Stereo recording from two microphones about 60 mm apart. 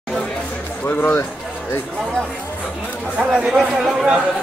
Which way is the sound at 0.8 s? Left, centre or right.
Left.